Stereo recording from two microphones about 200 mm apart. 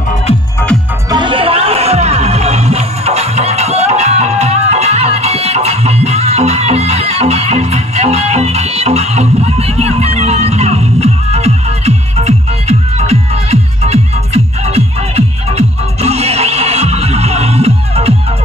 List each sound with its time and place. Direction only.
1.1 s music: 25° right (ahead or behind)